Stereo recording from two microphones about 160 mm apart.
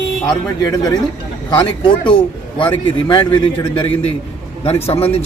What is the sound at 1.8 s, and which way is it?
Speech, 30° left (ahead or behind).